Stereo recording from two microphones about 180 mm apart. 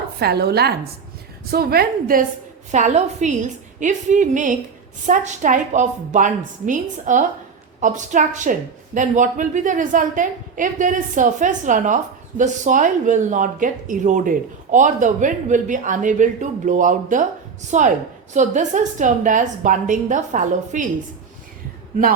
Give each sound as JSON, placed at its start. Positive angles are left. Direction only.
{"t": 0.2, "sound": "a woman's voice", "side_deg": -65}
{"t": 2.7, "sound": "speech", "side_deg": -40}